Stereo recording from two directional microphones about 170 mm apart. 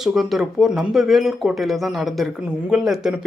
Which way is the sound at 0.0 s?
Centre (ahead or behind).